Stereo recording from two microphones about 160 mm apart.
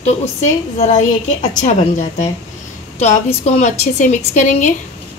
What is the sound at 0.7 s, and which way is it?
Speech, 45° left (ahead or behind).